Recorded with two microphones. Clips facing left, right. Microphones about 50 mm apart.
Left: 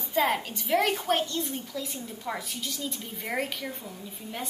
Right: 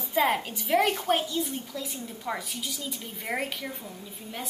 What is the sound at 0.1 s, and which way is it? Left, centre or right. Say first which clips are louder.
A woman's voice: right 1 dB; centre.